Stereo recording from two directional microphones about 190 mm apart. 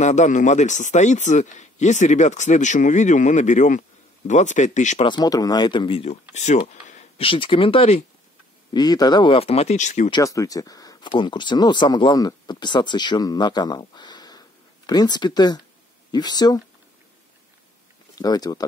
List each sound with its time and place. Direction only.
0.0 s speech: 40° left (ahead or behind)
5.0 s speech: 20° left (ahead or behind); by 10.1 s 40° left (ahead or behind)
10.1 s speech: 15° left (ahead or behind)
18.1 s speech: 20° left (ahead or behind)